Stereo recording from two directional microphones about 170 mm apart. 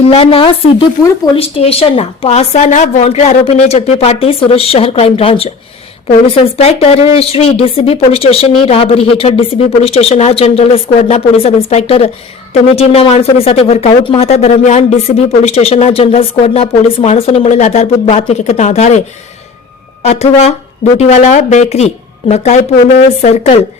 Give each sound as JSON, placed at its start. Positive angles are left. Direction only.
{"t": 0.1, "sound": "speech", "side_deg": 35}
{"t": 23.0, "sound": "speech", "side_deg": 40}